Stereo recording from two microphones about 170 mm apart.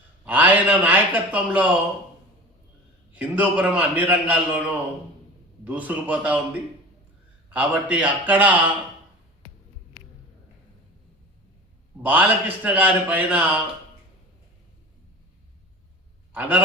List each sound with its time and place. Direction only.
0.3 s a man's voice: 10° right (ahead or behind)
3.2 s a man's voice: 10° right (ahead or behind)
7.5 s a man's voice: 10° right (ahead or behind)
12.0 s a man's voice: 10° right (ahead or behind)
16.3 s a man's voice: 10° right (ahead or behind)